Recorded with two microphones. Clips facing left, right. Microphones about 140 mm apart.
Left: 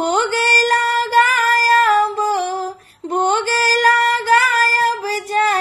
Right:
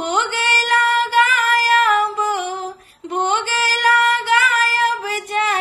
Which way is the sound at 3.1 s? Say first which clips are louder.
Left 3 dB; 40° left (ahead or behind).